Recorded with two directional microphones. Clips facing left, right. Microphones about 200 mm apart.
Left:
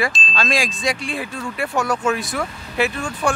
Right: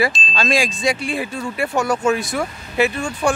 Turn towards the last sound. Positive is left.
turn(degrees=0)  # may be behind; listen again after turning